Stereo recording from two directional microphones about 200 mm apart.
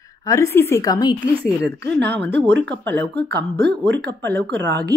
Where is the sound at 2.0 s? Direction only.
55° right (ahead or behind).